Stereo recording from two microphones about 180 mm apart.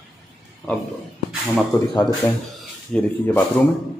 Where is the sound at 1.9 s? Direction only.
25° left (ahead or behind).